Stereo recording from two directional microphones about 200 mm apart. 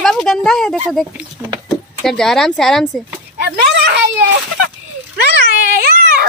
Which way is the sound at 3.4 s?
55° right (ahead or behind).